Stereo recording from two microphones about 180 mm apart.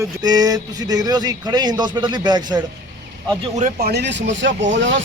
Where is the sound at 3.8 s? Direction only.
70° right (ahead or behind); by 5.0 s 90° right.